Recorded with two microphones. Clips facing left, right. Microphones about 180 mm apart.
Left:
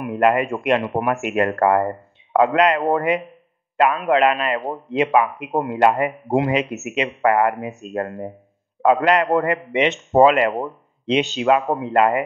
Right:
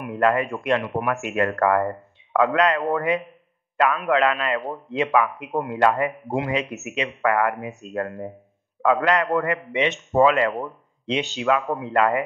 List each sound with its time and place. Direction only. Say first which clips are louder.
0.0 s a man's voice: left 3 dB; 20° left (ahead or behind)
0.8 s speech: left 3 dB; 35° left (ahead or behind)
1.2 s a man's voice: left 3 dB; 25° left (ahead or behind)